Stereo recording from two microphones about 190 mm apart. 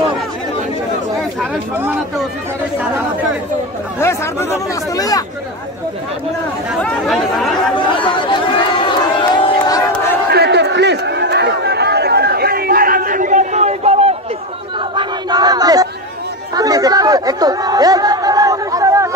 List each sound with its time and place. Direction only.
1.4 s speech: 10° right (ahead or behind)
4.0 s speech: 15° left (ahead or behind)
6.8 s speech: 5° left (ahead or behind)
7.9 s crowd: 25° left (ahead or behind)
10.2 s crowd: 60° right (ahead or behind); by 14.1 s 35° right (ahead or behind)
15.0 s battle cry: 20° right (ahead or behind)
16.5 s chatter: 20° right (ahead or behind)